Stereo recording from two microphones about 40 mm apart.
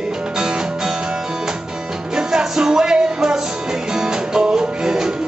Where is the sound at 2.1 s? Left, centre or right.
Centre.